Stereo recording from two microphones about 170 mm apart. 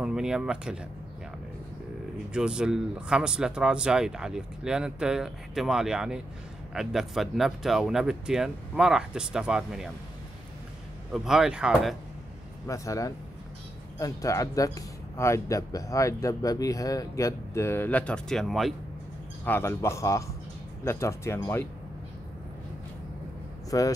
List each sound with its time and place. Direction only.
0.0 s speech: 5° right (ahead or behind)
2.3 s speech: 5° right (ahead or behind)
11.1 s speech: 5° right (ahead or behind)
12.6 s speech: 20° left (ahead or behind); by 18.8 s centre (ahead or behind)
19.4 s speech: 10° left (ahead or behind)
23.7 s speech: 20° left (ahead or behind)